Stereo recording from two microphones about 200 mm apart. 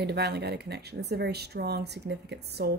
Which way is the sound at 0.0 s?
55° right (ahead or behind).